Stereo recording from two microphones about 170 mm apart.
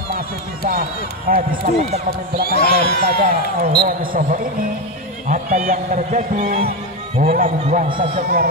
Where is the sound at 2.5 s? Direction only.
65° left (ahead or behind).